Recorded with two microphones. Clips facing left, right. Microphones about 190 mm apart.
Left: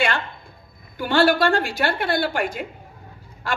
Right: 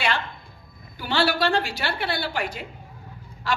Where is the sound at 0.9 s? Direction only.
50° left (ahead or behind).